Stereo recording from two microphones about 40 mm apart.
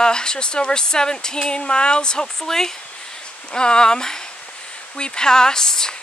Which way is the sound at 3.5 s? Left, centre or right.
Left.